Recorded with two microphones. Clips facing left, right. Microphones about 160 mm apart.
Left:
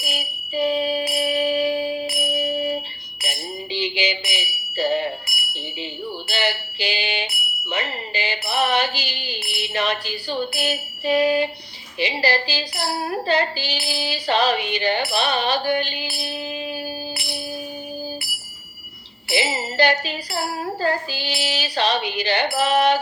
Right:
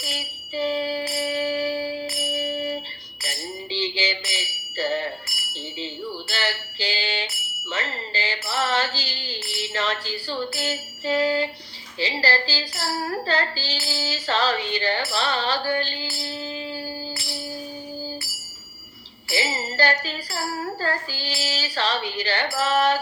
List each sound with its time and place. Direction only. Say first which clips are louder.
0.0 s music: left 3 dB; 15° left (ahead or behind)
5.4 s a sound: left 3 dB; 15° left (ahead or behind)
6.2 s bicycle bell: left 7 dB; 15° left (ahead or behind)
7.6 s a sound: left 3 dB; 15° left (ahead or behind)
11.9 s music: left 3 dB; 15° left (ahead or behind)
19.3 s music: left 3 dB; 20° left (ahead or behind)